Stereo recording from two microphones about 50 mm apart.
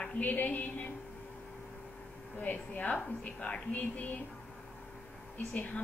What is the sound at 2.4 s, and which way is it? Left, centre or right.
A woman's voice, left.